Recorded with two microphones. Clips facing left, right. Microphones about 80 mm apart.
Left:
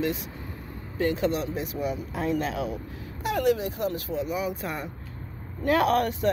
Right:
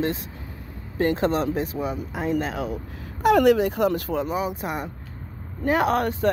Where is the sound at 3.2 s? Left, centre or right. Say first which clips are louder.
Right 8 dB; right.